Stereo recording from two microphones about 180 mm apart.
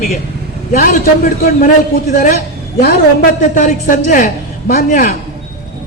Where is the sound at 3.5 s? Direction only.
45° left (ahead or behind).